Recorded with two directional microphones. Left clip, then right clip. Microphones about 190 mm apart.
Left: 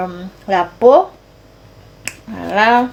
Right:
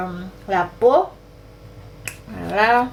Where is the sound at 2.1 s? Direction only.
45° left (ahead or behind).